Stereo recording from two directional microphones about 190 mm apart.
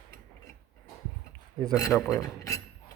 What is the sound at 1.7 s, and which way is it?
Speech, 15° left (ahead or behind).